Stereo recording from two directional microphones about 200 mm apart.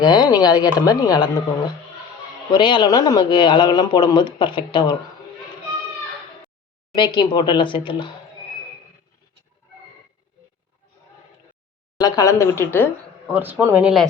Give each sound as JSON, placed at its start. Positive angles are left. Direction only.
{"t": 0.0, "sound": "speech", "side_deg": 20}
{"t": 2.5, "sound": "speech", "side_deg": 25}
{"t": 6.9, "sound": "speech", "side_deg": 20}
{"t": 11.9, "sound": "speech", "side_deg": 20}
{"t": 13.2, "sound": "speech", "side_deg": -10}